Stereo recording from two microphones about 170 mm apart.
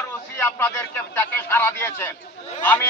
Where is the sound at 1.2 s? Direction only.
15° left (ahead or behind).